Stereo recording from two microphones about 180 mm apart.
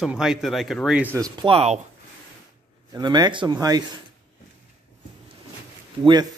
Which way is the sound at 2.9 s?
25° right (ahead or behind).